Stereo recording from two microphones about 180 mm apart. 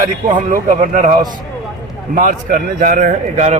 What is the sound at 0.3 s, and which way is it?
Speech, 45° right (ahead or behind).